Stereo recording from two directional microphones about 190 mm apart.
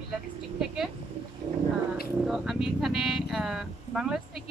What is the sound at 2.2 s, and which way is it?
Speech, centre (ahead or behind).